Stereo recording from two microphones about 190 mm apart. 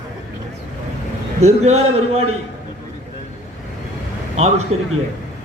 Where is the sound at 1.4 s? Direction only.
35° right (ahead or behind).